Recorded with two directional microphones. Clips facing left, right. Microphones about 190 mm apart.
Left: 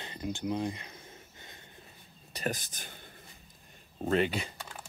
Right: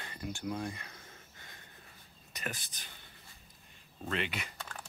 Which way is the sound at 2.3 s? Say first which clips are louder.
Left 8 dB; 40° left (ahead or behind).